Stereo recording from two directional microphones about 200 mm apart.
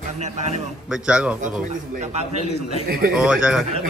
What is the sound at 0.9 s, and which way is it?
Speech, 5° right (ahead or behind).